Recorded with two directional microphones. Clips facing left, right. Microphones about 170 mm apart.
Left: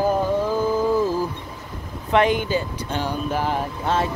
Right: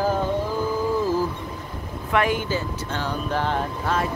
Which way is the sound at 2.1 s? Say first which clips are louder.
Left 4 dB; 20° left (ahead or behind).